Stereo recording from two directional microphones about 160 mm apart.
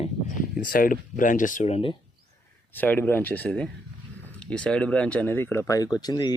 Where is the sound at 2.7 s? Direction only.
10° left (ahead or behind).